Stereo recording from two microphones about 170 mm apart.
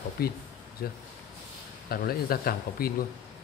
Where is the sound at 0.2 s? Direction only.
65° left (ahead or behind).